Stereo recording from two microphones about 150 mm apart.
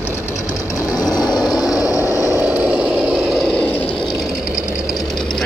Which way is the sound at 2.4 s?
10° right (ahead or behind).